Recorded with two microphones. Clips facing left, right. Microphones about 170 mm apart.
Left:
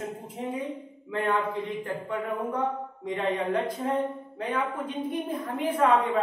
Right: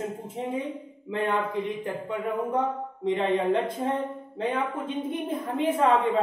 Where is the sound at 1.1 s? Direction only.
20° right (ahead or behind).